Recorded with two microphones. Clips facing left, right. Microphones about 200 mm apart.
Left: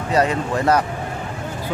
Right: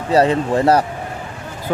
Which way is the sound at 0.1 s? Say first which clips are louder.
Right 5 dB; 30° right (ahead or behind).